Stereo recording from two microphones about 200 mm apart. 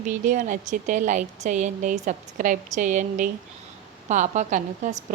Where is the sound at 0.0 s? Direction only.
40° right (ahead or behind).